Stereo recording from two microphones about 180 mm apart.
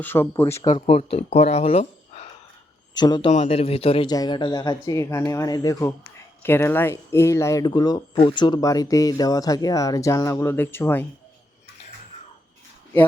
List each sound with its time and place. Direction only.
0.0 s speech: 10° left (ahead or behind)
0.7 s speech: 35° left (ahead or behind)
2.9 s speech: 25° left (ahead or behind)
3.3 s speech: 35° left (ahead or behind); by 11.0 s 10° left (ahead or behind)